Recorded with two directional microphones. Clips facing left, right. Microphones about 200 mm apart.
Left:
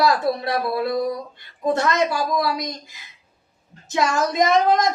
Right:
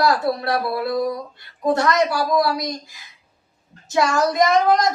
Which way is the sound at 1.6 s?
20° left (ahead or behind).